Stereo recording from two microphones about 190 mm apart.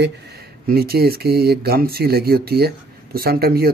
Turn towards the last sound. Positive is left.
turn(degrees=-50)  # may be behind; listen again after turning